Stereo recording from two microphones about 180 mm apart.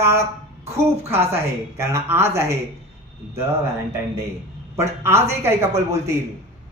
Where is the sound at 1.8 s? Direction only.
15° right (ahead or behind).